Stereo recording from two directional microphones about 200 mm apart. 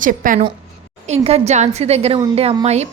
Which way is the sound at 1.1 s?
30° right (ahead or behind).